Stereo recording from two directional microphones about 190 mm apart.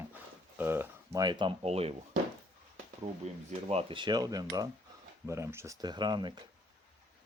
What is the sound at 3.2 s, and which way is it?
Speech, 35° right (ahead or behind).